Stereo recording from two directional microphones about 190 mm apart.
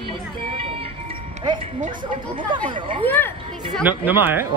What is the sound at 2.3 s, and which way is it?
Speech, 25° right (ahead or behind).